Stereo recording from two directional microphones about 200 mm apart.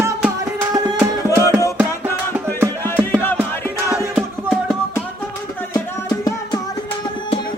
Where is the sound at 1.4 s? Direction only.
15° left (ahead or behind).